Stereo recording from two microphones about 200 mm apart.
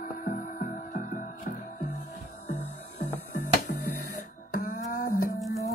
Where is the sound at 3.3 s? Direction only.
40° left (ahead or behind).